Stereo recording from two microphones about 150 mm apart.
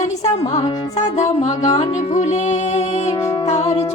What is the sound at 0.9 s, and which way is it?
Speech, 50° left (ahead or behind).